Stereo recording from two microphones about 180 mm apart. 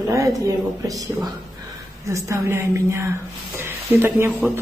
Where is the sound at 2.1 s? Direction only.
15° right (ahead or behind).